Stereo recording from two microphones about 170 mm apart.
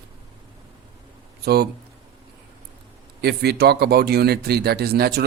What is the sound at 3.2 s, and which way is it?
Speech, 70° right (ahead or behind).